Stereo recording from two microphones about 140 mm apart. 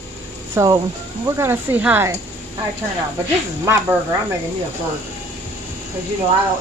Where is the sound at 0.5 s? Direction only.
25° right (ahead or behind).